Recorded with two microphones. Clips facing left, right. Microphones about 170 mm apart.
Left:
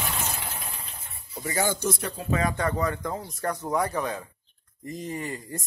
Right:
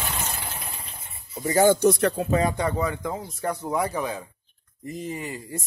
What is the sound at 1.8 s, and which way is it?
Speech, 70° right (ahead or behind).